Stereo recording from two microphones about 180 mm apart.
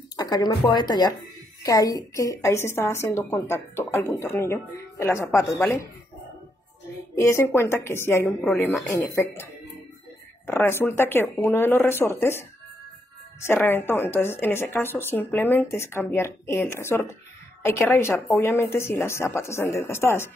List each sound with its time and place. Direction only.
0.1 s a woman's voice: 25° left (ahead or behind)
7.2 s a woman's voice: 15° left (ahead or behind)
8.3 s a woman's voice: centre (ahead or behind)